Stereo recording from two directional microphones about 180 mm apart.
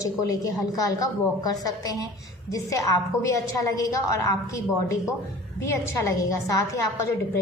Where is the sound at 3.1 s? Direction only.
15° left (ahead or behind).